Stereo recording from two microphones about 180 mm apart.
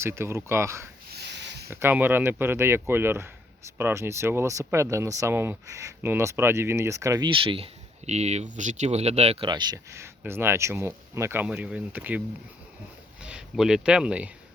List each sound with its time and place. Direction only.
0.0 s speech: 15° right (ahead or behind)
1.1 s a sound: 70° right (ahead or behind)
1.6 s speech: 15° right (ahead or behind)
13.2 s speech: 5° right (ahead or behind)